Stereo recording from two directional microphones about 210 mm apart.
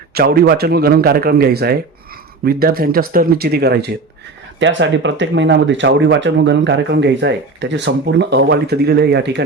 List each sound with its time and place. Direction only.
0.1 s speech: 45° right (ahead or behind)
4.6 s speech: 60° right (ahead or behind)